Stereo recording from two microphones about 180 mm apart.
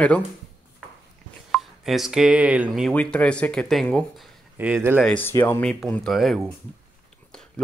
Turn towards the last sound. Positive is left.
turn(degrees=0)  # may be behind; listen again after turning